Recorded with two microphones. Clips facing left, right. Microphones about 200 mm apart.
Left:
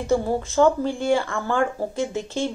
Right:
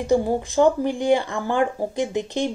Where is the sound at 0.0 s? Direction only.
15° right (ahead or behind).